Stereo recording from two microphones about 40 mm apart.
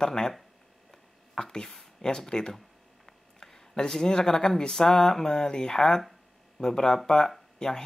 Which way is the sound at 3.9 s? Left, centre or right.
Centre.